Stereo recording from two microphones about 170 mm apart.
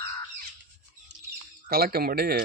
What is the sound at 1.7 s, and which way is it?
Speech, 60° right (ahead or behind).